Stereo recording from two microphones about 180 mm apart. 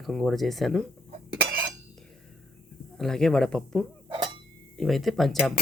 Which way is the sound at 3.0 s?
Centre (ahead or behind).